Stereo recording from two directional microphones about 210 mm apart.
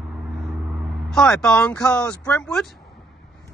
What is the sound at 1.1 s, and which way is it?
Speech, 5° left (ahead or behind).